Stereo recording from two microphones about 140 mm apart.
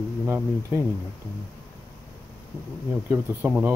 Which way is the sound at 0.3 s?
15° right (ahead or behind).